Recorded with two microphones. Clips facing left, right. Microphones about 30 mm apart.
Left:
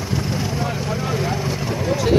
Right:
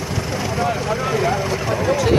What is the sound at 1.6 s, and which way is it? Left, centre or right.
Vehicle, right.